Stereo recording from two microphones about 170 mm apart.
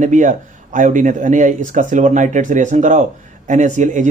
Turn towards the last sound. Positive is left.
turn(degrees=-45)  # may be behind; listen again after turning